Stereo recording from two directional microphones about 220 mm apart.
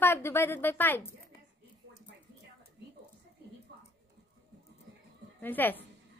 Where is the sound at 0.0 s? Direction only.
10° left (ahead or behind).